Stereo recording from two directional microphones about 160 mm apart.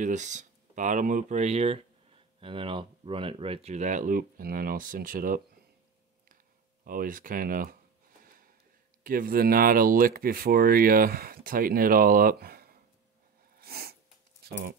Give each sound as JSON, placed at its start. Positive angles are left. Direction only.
{"t": 0.0, "sound": "speech", "side_deg": -50}
{"t": 6.8, "sound": "speech", "side_deg": -60}
{"t": 9.0, "sound": "speech", "side_deg": -60}
{"t": 13.6, "sound": "sneeze", "side_deg": -75}
{"t": 14.4, "sound": "a sound", "side_deg": -80}